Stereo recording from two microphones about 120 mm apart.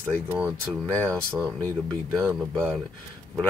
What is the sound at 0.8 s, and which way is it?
Speech, 10° left (ahead or behind).